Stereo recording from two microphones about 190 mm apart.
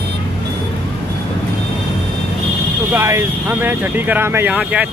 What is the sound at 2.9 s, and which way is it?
Speech, 10° right (ahead or behind).